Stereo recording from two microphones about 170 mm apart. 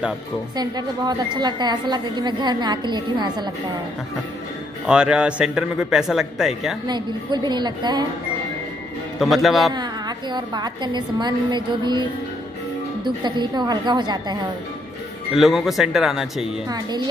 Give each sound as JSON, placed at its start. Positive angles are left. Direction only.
{"t": 0.6, "sound": "a woman's voice", "side_deg": -25}
{"t": 4.8, "sound": "speech", "side_deg": -5}
{"t": 6.9, "sound": "a woman's voice", "side_deg": -25}
{"t": 9.2, "sound": "speech", "side_deg": 0}
{"t": 9.8, "sound": "a woman's voice", "side_deg": -25}
{"t": 15.3, "sound": "speech", "side_deg": 0}
{"t": 16.6, "sound": "a woman's voice", "side_deg": -25}